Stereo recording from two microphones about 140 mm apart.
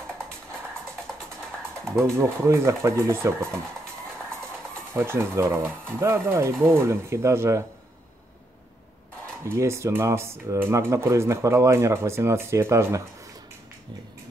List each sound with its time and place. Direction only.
1.9 s speech: 20° right (ahead or behind)
4.9 s speech: 15° right (ahead or behind)
9.5 s speech: 20° right (ahead or behind)